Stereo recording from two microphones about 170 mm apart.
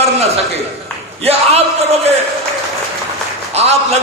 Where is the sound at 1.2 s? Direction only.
35° right (ahead or behind).